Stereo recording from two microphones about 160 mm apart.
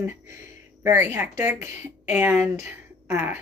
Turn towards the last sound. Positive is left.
turn(degrees=-15)  # may be behind; listen again after turning